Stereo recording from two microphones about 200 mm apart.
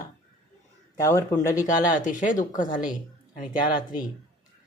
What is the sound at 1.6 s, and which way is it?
Speech, 40° left (ahead or behind).